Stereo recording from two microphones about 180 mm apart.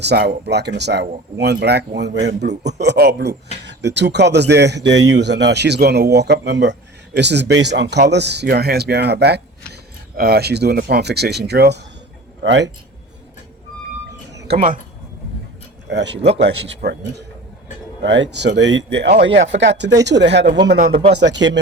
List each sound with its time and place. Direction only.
0.0 s speech: 65° right (ahead or behind)
12.4 s speech: 75° right (ahead or behind)
14.5 s speech: 40° right (ahead or behind)
15.9 s speech: 75° right (ahead or behind)
19.5 s speech: 80° right